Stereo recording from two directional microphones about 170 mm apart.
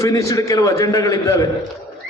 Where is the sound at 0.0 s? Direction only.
20° left (ahead or behind).